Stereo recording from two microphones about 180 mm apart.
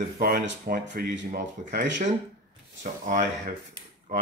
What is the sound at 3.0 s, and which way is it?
Speech, 45° right (ahead or behind).